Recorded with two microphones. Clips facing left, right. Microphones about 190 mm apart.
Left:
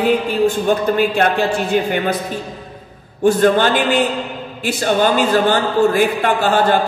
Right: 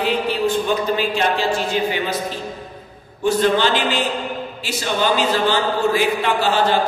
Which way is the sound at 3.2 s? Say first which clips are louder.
Left 4 dB; 50° left (ahead or behind).